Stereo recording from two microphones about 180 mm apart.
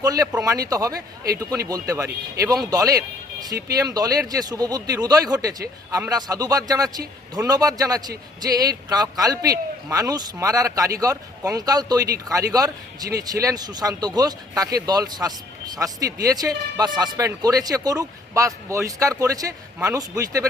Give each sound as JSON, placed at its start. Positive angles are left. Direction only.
{"t": 0.0, "sound": "speech", "side_deg": -20}